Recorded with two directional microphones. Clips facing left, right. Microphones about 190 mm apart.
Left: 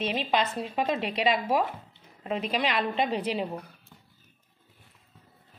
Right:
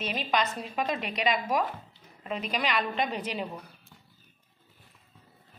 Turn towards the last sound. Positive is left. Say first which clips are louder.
# left 4 dB
turn(degrees=30)  # may be behind; listen again after turning